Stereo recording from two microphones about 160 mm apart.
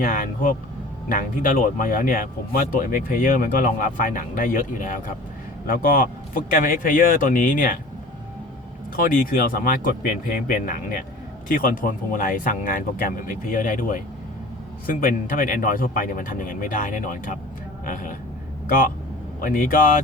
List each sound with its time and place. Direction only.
0.0 s speech: 60° left (ahead or behind)
9.0 s speech: 60° left (ahead or behind)
19.4 s speech: 60° left (ahead or behind)